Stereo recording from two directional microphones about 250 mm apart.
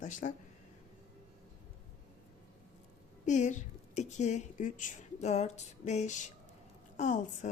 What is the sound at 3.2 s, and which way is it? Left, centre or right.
A woman's voice, left.